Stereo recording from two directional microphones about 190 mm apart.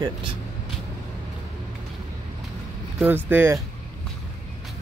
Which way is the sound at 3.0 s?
10° right (ahead or behind).